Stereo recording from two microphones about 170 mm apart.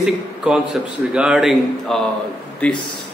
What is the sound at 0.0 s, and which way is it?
A man's voice, 5° right (ahead or behind).